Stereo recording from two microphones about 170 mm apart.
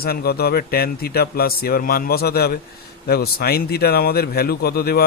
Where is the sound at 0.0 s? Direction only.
65° left (ahead or behind).